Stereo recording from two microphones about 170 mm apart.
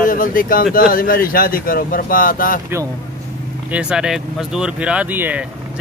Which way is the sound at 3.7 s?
5° right (ahead or behind).